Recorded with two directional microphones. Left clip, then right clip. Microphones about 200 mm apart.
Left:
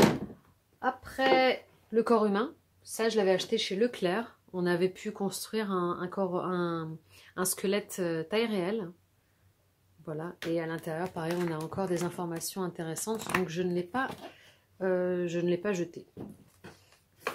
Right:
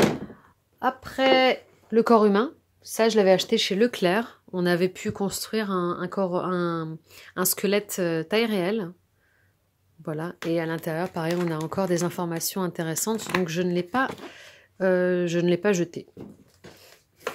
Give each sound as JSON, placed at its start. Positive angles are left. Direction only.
{"t": 0.7, "sound": "speech", "side_deg": -45}
{"t": 10.0, "sound": "speech", "side_deg": -40}